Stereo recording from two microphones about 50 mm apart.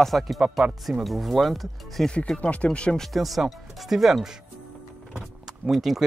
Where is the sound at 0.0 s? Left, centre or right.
Centre.